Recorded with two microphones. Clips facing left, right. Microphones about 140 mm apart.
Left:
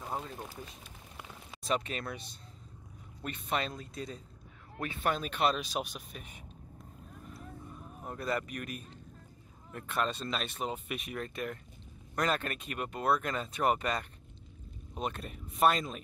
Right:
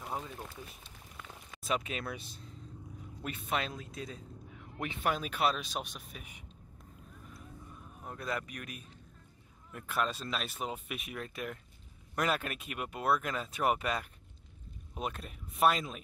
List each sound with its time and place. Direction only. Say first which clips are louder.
1.6 s speech: left 1 dB; 5° right (ahead or behind)
4.7 s speech: left 1 dB; 10° right (ahead or behind)
8.0 s speech: left 3 dB; centre (ahead or behind)